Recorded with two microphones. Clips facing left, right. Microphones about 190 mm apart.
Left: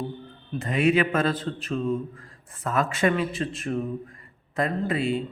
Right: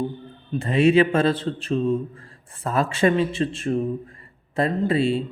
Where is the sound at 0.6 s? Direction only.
30° right (ahead or behind).